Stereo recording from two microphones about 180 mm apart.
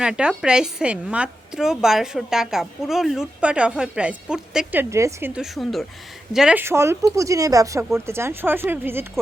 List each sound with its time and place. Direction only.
0.0 s a woman's voice: 5° right (ahead or behind)